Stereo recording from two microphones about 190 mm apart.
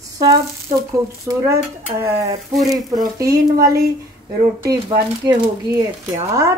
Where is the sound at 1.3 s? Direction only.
15° right (ahead or behind).